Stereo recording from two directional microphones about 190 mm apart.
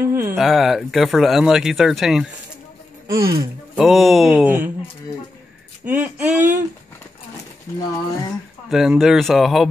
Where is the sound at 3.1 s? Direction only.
15° right (ahead or behind).